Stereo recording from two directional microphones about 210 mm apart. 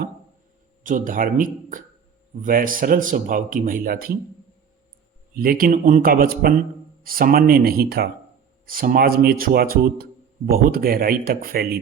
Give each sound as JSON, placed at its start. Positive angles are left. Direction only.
{"t": 0.9, "sound": "speech", "side_deg": -40}
{"t": 5.3, "sound": "speech", "side_deg": -45}